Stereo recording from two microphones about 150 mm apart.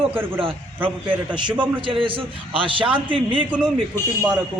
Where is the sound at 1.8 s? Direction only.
35° right (ahead or behind).